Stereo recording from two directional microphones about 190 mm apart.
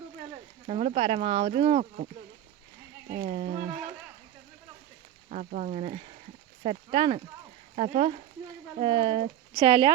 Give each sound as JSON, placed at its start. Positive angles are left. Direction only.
{"t": 0.7, "sound": "speech", "side_deg": -35}
{"t": 3.2, "sound": "speech", "side_deg": -30}
{"t": 5.3, "sound": "speech", "side_deg": -40}